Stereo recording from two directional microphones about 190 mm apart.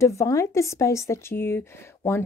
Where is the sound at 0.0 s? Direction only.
15° left (ahead or behind).